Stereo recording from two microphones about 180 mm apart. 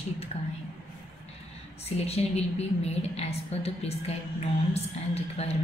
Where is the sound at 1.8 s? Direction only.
35° left (ahead or behind).